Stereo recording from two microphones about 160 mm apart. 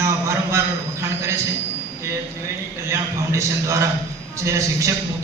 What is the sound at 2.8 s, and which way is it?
A man's voice, 15° right (ahead or behind).